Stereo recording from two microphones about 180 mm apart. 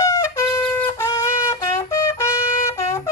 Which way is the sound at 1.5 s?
20° left (ahead or behind).